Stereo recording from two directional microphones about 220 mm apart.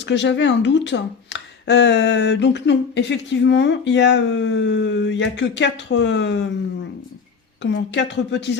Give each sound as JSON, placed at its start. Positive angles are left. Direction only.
{"t": 0.0, "sound": "speech", "side_deg": 55}
{"t": 7.6, "sound": "speech", "side_deg": 55}